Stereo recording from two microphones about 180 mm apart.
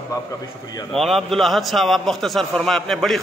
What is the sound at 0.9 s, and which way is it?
A man's voice, centre (ahead or behind).